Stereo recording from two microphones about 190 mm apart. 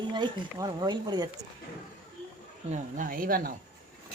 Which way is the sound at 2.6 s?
40° right (ahead or behind).